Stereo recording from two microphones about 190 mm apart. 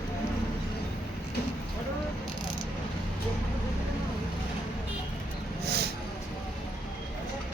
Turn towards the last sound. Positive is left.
turn(degrees=-55)  # may be behind; listen again after turning